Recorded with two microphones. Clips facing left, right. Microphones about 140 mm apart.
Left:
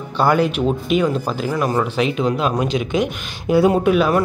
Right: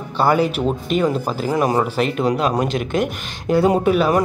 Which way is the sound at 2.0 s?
Centre (ahead or behind).